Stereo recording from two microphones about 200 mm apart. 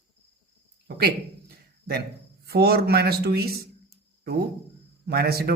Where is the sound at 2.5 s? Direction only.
55° right (ahead or behind).